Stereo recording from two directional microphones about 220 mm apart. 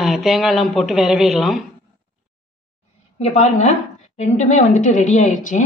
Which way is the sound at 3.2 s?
30° left (ahead or behind).